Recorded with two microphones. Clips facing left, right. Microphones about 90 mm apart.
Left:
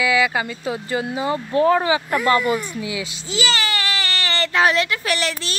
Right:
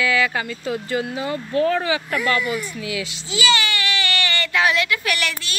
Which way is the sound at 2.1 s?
35° left (ahead or behind).